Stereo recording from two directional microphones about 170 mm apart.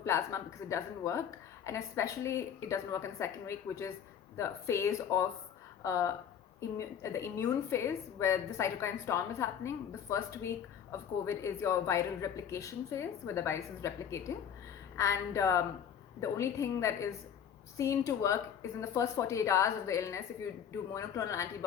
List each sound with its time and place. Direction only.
0.0 s a woman's voice: 15° left (ahead or behind)